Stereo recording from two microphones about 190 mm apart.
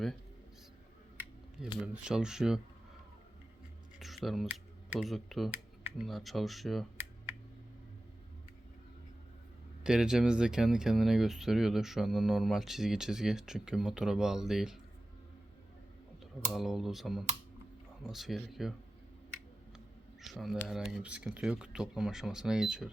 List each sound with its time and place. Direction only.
1.9 s speech: 5° right (ahead or behind)
4.0 s speech: centre (ahead or behind)
9.8 s speech: 5° right (ahead or behind)
16.2 s speech: centre (ahead or behind)
20.2 s speech: centre (ahead or behind)